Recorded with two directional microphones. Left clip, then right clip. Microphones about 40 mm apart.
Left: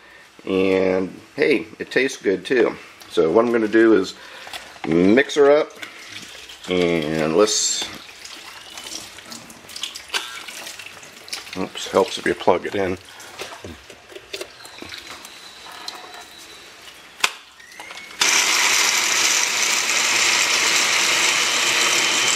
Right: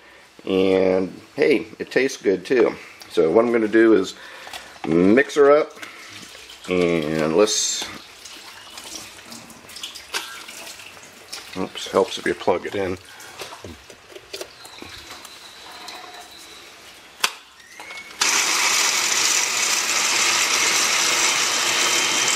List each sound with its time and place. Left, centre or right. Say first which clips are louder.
0.5 s speech: even; right
0.7 s speech: right 1 dB; centre
1.3 s speech: even; right
3.3 s speech: even; centre
7.2 s speech: left 1 dB; centre
10.1 s water: left 3 dB; centre
11.7 s speech: left 1 dB; left
12.8 s a sound: left 2 dB; centre
17.2 s a sound: left 2 dB; centre
18.2 s ratchet: left 2 dB; centre